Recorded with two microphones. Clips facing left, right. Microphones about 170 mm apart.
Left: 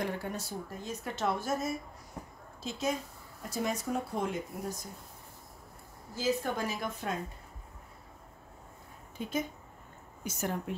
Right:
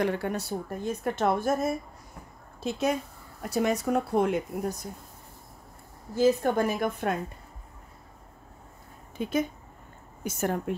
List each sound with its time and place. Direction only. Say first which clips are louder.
0.0 s speech: right 7 dB; 70° right (ahead or behind)
6.1 s speech: right 9 dB; 55° right (ahead or behind)
9.2 s speech: right 7 dB; 75° right (ahead or behind)
10.2 s a woman's voice: right 6 dB; 55° right (ahead or behind)